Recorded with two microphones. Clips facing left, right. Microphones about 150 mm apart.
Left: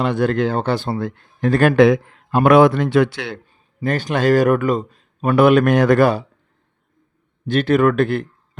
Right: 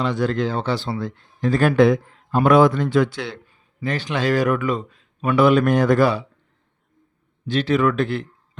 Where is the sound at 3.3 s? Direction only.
50° left (ahead or behind).